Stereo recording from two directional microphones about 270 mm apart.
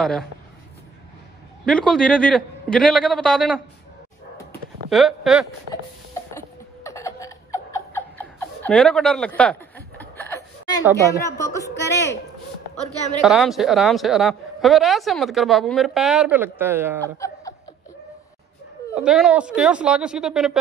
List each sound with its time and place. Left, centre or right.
0.0 s a woman's voice: centre
1.7 s a woman's voice: centre
4.8 s speech: centre
6.3 s laughter: centre
11.1 s a woman's voice: centre
11.7 s a woman's voice: left
13.2 s a woman's voice: centre
17.0 s laughter: centre
18.9 s a woman's voice: centre